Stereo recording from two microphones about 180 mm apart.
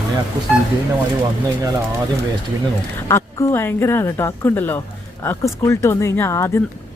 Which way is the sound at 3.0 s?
15° left (ahead or behind).